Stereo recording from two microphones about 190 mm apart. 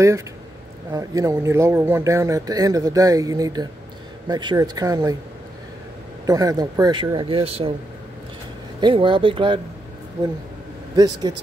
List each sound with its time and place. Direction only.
0.9 s speech: 15° right (ahead or behind)
6.2 s speech: 20° right (ahead or behind)
8.8 s speech: 25° right (ahead or behind)
11.3 s speech: 20° right (ahead or behind)